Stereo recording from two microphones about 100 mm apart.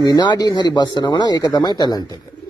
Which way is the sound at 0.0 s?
45° left (ahead or behind).